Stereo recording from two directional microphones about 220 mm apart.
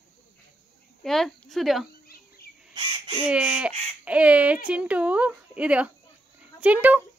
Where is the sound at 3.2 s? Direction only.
5° right (ahead or behind).